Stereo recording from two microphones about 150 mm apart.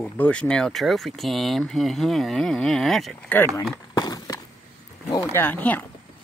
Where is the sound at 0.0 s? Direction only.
5° left (ahead or behind).